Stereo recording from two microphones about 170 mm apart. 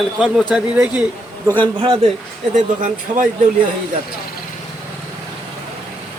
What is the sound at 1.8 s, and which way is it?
Speech, 30° right (ahead or behind).